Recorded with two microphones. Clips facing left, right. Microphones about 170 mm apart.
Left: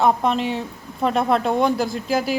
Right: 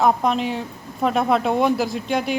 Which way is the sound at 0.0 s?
Centre (ahead or behind).